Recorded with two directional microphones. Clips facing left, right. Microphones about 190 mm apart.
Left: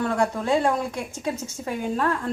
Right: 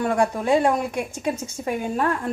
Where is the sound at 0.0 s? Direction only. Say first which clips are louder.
Right 2 dB; 15° right (ahead or behind).